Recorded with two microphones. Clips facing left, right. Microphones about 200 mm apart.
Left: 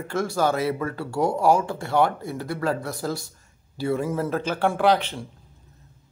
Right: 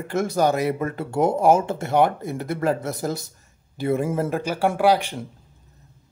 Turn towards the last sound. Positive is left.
turn(degrees=-10)  # may be behind; listen again after turning